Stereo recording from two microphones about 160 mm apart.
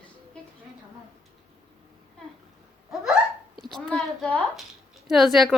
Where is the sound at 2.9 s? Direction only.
5° right (ahead or behind).